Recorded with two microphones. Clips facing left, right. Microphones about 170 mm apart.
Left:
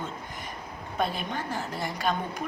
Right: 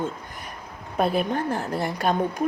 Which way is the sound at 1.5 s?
55° right (ahead or behind).